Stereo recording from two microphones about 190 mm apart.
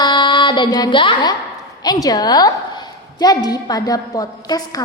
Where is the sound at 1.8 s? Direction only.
20° left (ahead or behind).